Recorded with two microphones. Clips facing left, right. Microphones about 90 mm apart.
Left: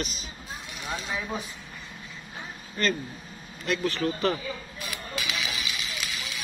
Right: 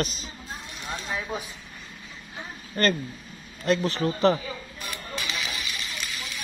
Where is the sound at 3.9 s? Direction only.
25° right (ahead or behind).